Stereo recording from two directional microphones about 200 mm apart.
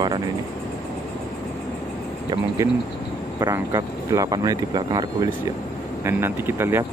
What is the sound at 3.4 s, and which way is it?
Speech, 15° right (ahead or behind).